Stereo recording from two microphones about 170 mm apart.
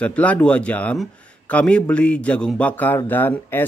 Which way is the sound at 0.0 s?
10° left (ahead or behind).